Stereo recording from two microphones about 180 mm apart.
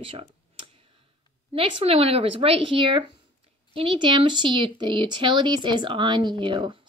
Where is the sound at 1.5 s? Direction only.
30° right (ahead or behind).